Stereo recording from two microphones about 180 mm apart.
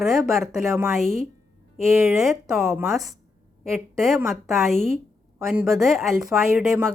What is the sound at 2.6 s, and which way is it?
Speech, 15° right (ahead or behind).